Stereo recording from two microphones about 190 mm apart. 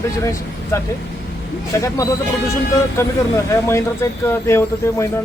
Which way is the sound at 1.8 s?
15° left (ahead or behind).